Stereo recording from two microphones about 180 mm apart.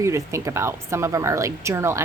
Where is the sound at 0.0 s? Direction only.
15° right (ahead or behind).